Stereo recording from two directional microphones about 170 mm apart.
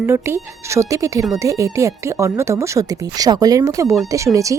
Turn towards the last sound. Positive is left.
turn(degrees=-20)  # may be behind; listen again after turning